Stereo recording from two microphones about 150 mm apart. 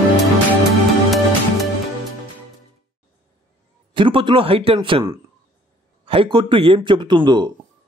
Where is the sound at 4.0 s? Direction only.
35° right (ahead or behind).